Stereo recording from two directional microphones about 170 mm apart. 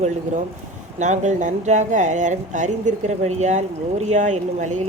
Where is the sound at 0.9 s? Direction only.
45° right (ahead or behind).